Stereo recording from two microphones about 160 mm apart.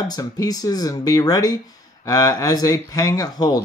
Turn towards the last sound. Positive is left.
turn(degrees=25)  # may be behind; listen again after turning